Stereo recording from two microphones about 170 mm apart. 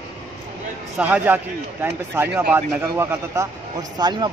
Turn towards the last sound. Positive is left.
turn(degrees=-25)  # may be behind; listen again after turning